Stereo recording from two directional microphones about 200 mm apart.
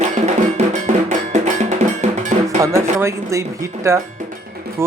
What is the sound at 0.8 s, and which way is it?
Cowbell, 40° right (ahead or behind).